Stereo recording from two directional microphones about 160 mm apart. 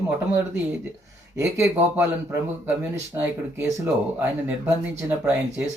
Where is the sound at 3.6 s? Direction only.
10° right (ahead or behind).